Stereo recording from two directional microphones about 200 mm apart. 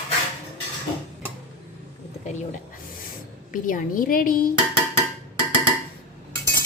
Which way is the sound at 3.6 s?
40° left (ahead or behind).